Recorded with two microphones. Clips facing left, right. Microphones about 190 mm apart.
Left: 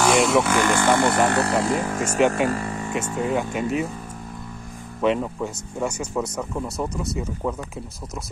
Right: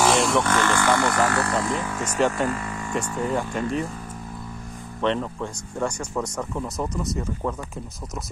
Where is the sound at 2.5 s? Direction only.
35° left (ahead or behind).